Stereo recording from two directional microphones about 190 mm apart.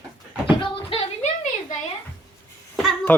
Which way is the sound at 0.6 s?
30° left (ahead or behind).